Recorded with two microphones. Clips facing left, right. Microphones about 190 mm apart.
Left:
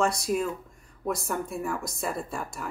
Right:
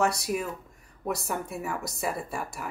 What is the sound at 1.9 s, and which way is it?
Speech, 5° right (ahead or behind).